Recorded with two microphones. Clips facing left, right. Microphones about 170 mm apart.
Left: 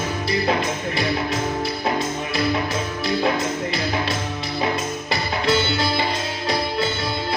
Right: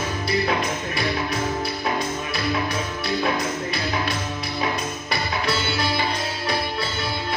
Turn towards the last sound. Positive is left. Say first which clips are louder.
# left 4 dB
turn(degrees=25)  # may be behind; listen again after turning